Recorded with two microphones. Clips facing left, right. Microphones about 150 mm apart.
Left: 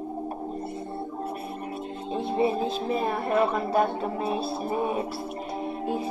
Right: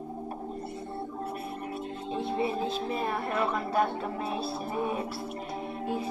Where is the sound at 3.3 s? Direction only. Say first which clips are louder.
Left 6 dB; 30° left (ahead or behind).